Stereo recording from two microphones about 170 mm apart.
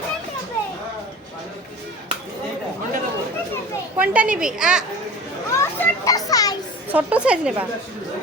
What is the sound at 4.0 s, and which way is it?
Speech, 5° right (ahead or behind).